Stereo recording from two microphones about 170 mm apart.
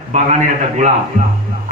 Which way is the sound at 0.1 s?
45° right (ahead or behind).